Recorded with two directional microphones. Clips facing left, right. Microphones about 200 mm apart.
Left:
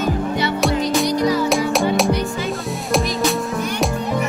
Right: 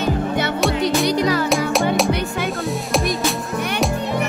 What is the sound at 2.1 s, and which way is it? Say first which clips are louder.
Music: left 1 dB; 60° right (ahead or behind).